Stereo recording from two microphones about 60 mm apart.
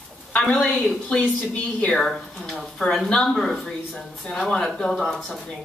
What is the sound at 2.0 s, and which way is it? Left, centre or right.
Speech, centre.